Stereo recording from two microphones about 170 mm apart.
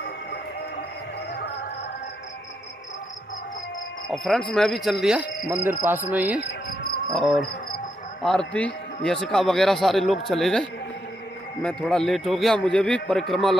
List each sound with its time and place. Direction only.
4.1 s a man's voice: centre (ahead or behind)
5.5 s cricket: 10° right (ahead or behind)
6.4 s insect: 65° left (ahead or behind)
7.1 s a man's voice: centre (ahead or behind)